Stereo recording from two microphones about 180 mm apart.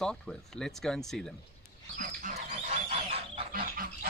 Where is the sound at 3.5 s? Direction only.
55° right (ahead or behind).